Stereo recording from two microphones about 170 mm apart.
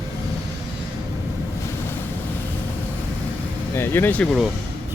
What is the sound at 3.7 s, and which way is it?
Speech, 15° left (ahead or behind).